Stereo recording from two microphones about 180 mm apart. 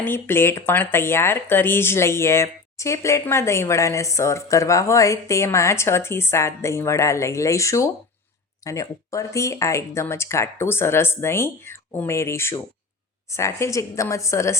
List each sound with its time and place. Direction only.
0.0 s speech: 10° left (ahead or behind)